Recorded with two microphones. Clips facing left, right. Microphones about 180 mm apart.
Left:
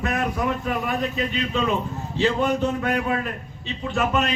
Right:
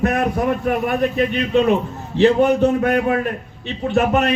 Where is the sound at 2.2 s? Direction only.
55° right (ahead or behind).